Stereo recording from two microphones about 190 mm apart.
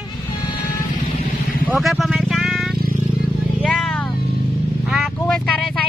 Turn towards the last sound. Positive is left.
turn(degrees=0)  # may be behind; listen again after turning